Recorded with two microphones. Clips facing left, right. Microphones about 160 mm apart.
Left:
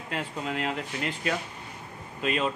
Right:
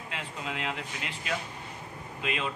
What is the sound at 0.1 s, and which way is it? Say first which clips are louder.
Speech: left 6 dB; 45° left (ahead or behind).